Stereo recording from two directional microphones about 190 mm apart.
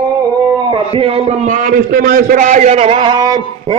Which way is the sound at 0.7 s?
25° right (ahead or behind).